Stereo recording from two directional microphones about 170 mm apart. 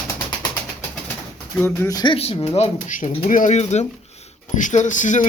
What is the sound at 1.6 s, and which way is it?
Speech, 15° left (ahead or behind).